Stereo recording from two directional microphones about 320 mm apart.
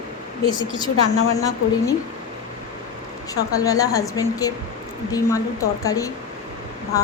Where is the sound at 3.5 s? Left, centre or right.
Centre.